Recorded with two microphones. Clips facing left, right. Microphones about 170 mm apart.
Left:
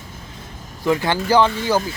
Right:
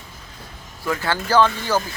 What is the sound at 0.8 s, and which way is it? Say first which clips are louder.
Speech: left 5 dB; 15° left (ahead or behind).